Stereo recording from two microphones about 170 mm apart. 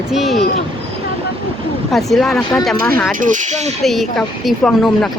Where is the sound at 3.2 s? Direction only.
45° right (ahead or behind).